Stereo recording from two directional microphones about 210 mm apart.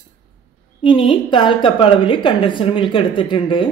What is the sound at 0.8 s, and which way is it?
Speech, 25° left (ahead or behind).